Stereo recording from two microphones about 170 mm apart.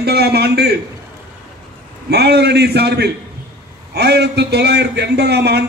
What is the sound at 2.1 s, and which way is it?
A man's voice, 75° right (ahead or behind).